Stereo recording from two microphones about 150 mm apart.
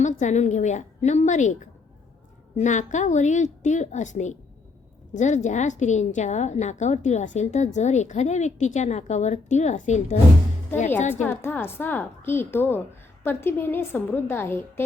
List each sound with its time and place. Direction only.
0.0 s a woman's voice: 55° left (ahead or behind)
11.1 s a woman's voice: 15° left (ahead or behind)